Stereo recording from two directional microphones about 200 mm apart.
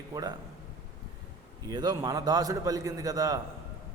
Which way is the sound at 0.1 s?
20° right (ahead or behind).